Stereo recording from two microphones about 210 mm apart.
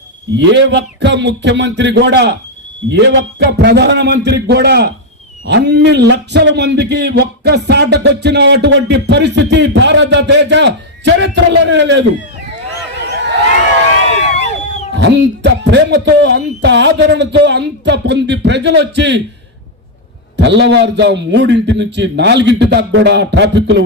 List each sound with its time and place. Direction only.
0.3 s a man's voice: 55° right (ahead or behind)
13.0 s a sound: 55° right (ahead or behind)
14.9 s speech: 55° right (ahead or behind)
20.3 s speech: 55° right (ahead or behind)